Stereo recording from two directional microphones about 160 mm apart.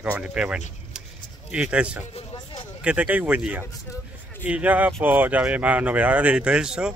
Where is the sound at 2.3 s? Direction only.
30° left (ahead or behind).